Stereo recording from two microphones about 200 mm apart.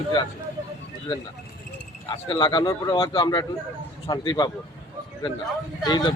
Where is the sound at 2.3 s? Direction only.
20° left (ahead or behind).